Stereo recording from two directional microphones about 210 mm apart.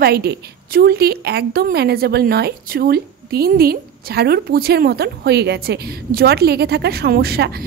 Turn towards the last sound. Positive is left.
turn(degrees=-50)  # may be behind; listen again after turning